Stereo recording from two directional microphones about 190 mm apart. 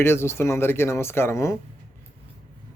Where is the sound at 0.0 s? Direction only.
15° left (ahead or behind).